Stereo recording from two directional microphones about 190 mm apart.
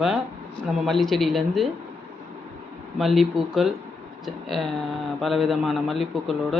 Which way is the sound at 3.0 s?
Centre (ahead or behind).